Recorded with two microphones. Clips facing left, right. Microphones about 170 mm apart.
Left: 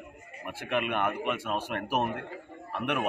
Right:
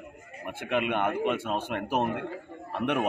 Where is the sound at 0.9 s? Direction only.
25° right (ahead or behind).